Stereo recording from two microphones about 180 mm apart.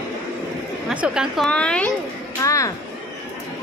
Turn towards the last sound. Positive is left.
turn(degrees=15)  # may be behind; listen again after turning